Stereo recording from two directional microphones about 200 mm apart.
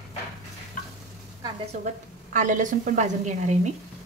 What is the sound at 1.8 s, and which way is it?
A woman's voice, 40° right (ahead or behind).